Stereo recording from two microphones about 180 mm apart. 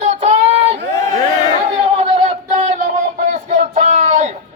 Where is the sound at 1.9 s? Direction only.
35° right (ahead or behind).